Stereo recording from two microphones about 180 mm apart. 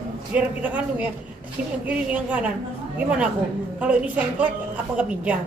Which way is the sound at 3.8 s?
5° right (ahead or behind).